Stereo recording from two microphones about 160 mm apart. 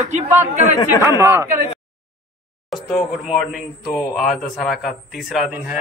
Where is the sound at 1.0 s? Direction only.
15° right (ahead or behind).